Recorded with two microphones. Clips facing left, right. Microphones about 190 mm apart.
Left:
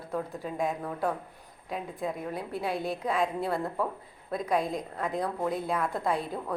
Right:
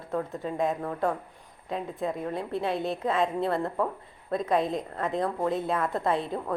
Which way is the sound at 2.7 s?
25° right (ahead or behind).